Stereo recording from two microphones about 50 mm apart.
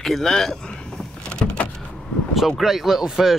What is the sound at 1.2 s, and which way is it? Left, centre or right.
Vehicle, left.